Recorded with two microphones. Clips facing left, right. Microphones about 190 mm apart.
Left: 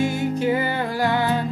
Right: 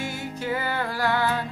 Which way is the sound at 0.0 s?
20° left (ahead or behind).